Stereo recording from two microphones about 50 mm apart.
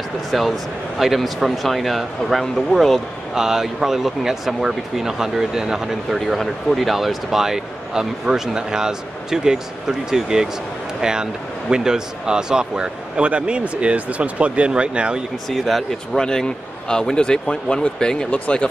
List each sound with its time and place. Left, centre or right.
0.3 s speech: centre
3.3 s speech: centre
15.5 s speech: centre; by 18.7 s left